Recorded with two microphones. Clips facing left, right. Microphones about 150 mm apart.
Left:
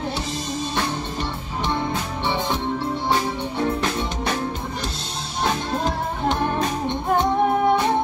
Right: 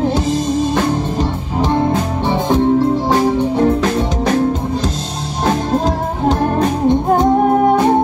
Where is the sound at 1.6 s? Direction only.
45° right (ahead or behind).